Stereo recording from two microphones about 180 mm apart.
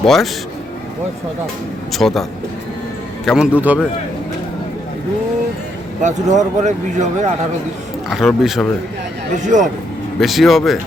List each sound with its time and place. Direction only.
0.0 s speech: centre (ahead or behind)
1.9 s speech: centre (ahead or behind)
3.2 s speech: 5° right (ahead or behind)
6.0 s speech: 40° right (ahead or behind)
8.1 s speech: centre (ahead or behind)
9.4 s speech: 45° right (ahead or behind)
10.2 s speech: centre (ahead or behind)